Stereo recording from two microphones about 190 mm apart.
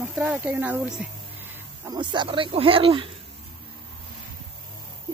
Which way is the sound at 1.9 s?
25° right (ahead or behind).